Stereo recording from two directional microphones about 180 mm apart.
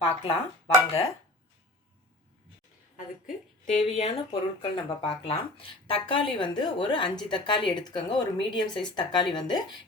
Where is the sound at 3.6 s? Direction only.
40° left (ahead or behind).